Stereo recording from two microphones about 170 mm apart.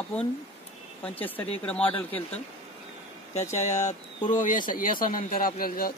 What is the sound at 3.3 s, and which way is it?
Speech, 40° left (ahead or behind).